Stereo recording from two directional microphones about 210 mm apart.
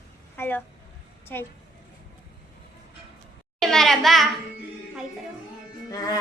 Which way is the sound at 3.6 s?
Centre (ahead or behind).